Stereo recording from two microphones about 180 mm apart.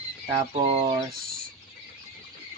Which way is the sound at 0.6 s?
30° right (ahead or behind).